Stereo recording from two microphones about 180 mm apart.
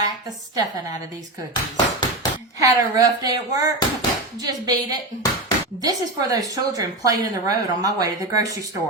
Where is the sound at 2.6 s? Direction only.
20° right (ahead or behind).